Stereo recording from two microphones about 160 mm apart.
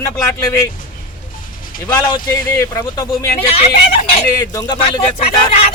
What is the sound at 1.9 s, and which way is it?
Speech, 20° left (ahead or behind).